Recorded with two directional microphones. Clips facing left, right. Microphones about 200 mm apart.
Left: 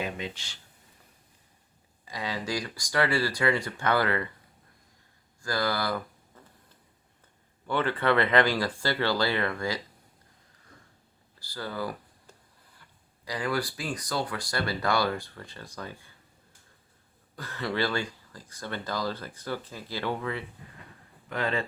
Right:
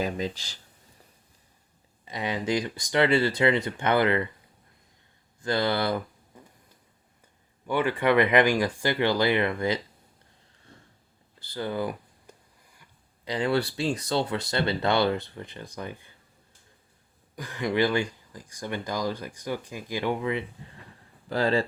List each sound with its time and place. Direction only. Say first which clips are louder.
0.0 s speech: right 5 dB; 35° right (ahead or behind)
2.0 s speech: right 5 dB; 20° right (ahead or behind)
5.4 s speech: right 4 dB; 25° right (ahead or behind)
7.7 s speech: right 3 dB; 10° right (ahead or behind)
11.3 s speech: right 5 dB; 20° right (ahead or behind)
17.3 s speech: right 4 dB; 15° right (ahead or behind)
21.2 s speech: right 6 dB; 35° right (ahead or behind)